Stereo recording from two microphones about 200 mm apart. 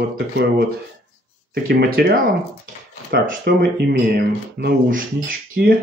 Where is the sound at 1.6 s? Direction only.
45° right (ahead or behind).